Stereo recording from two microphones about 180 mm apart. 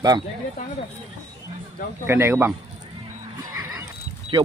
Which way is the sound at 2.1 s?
10° right (ahead or behind).